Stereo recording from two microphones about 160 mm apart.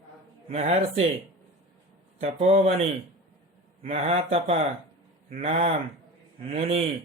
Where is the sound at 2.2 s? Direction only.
40° right (ahead or behind).